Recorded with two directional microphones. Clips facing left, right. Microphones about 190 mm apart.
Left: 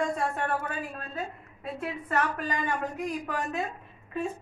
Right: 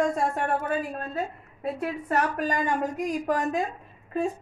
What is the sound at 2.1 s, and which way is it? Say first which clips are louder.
A woman's voice: right 3 dB; 40° right (ahead or behind).